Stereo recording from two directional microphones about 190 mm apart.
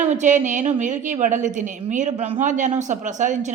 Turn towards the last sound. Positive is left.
turn(degrees=-40)  # may be behind; listen again after turning